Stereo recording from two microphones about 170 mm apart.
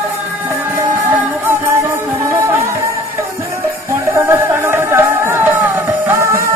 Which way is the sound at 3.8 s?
15° right (ahead or behind).